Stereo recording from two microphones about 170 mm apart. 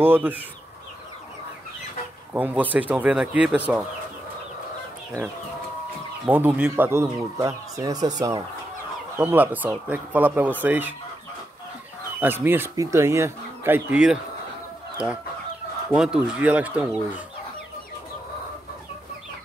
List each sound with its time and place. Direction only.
0.0 s speech: 10° right (ahead or behind)
2.3 s speech: 10° right (ahead or behind)
6.2 s speech: 10° right (ahead or behind)
9.2 s speech: 10° right (ahead or behind)
12.2 s speech: 10° right (ahead or behind)
15.9 s speech: 5° right (ahead or behind)